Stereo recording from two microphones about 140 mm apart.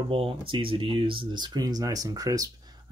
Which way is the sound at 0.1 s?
40° right (ahead or behind).